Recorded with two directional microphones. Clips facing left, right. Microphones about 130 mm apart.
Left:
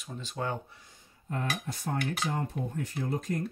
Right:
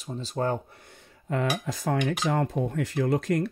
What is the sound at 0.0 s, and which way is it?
Speech, 35° right (ahead or behind).